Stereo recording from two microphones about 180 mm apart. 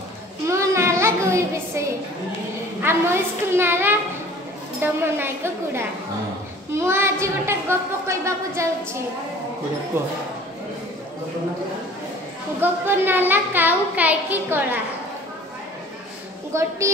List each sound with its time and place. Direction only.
0.5 s a sound: 15° right (ahead or behind)
2.8 s a woman's voice: 15° right (ahead or behind)
5.0 s a child's voice: 15° right (ahead or behind)
12.5 s a child's voice: 10° right (ahead or behind)
16.5 s a child's voice: 15° right (ahead or behind)